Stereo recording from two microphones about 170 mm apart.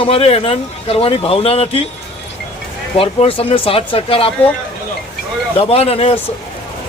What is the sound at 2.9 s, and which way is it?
Speech, 35° left (ahead or behind).